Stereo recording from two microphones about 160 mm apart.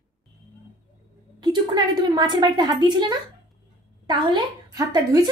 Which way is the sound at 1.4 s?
25° right (ahead or behind).